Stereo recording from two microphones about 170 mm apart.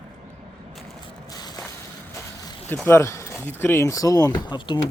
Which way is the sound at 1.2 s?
25° left (ahead or behind).